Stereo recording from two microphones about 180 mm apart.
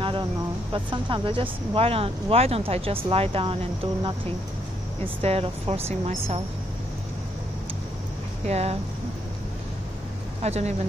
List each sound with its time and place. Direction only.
0.7 s speech: 25° right (ahead or behind)
8.5 s speech: 35° right (ahead or behind)
10.4 s speech: 35° right (ahead or behind)